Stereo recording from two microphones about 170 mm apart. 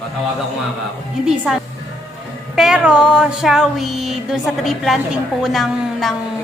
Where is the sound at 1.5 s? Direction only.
5° right (ahead or behind).